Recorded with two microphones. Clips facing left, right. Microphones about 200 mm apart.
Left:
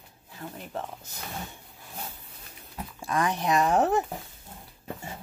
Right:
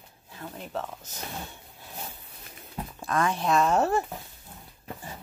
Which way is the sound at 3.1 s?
15° left (ahead or behind).